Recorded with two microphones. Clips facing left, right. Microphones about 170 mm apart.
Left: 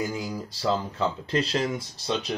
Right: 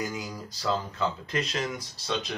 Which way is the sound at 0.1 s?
30° left (ahead or behind).